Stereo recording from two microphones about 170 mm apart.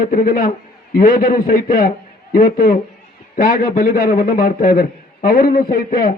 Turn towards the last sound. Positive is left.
turn(degrees=60)  # may be behind; listen again after turning